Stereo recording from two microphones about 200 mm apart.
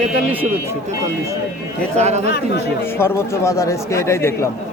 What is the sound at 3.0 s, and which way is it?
Speech, 15° left (ahead or behind).